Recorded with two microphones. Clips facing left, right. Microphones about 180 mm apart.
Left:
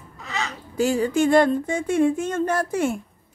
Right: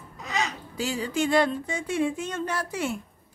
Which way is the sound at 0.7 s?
50° left (ahead or behind).